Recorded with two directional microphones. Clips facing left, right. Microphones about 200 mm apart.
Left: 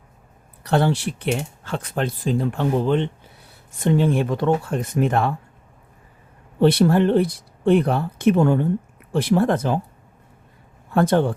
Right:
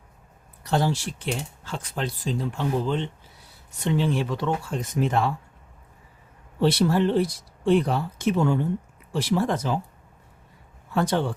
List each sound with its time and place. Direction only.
0.6 s speech: 65° left (ahead or behind)
6.6 s speech: 55° left (ahead or behind)
10.9 s speech: 55° left (ahead or behind)